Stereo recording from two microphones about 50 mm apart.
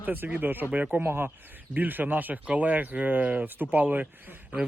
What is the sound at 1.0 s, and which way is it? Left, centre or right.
Speech, right.